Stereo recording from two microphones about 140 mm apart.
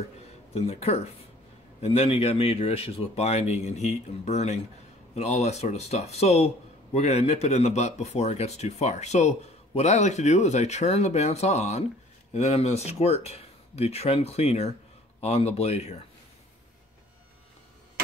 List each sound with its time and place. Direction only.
0.6 s speech: 50° left (ahead or behind)